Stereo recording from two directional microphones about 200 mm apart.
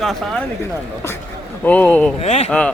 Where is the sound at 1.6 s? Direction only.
5° left (ahead or behind).